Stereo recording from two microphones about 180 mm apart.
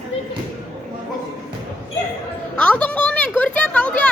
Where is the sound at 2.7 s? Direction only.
5° left (ahead or behind).